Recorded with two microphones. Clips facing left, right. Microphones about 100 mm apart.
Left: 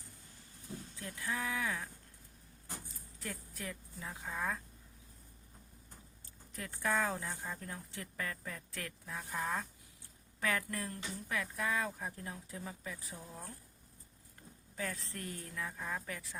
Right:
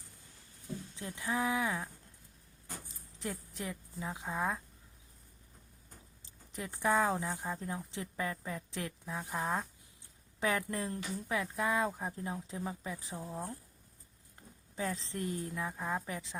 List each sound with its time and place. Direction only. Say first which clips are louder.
0.9 s speech: right 5 dB; 20° right (ahead or behind)
3.2 s speech: right 5 dB; 20° right (ahead or behind)
6.5 s speech: right 4 dB; 20° right (ahead or behind)
14.8 s speech: right 5 dB; 25° right (ahead or behind)